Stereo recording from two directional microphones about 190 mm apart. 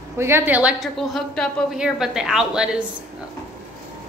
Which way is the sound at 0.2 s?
15° right (ahead or behind).